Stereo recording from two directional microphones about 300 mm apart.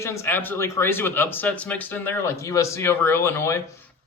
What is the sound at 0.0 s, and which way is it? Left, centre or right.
Speech, centre.